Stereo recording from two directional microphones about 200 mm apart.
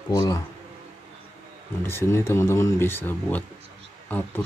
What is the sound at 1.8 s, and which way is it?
Speech, 10° left (ahead or behind).